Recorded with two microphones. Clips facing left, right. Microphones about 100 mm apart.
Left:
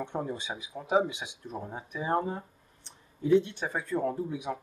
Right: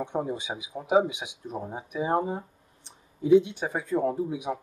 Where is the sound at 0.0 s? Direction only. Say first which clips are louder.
Right 4 dB; 15° right (ahead or behind).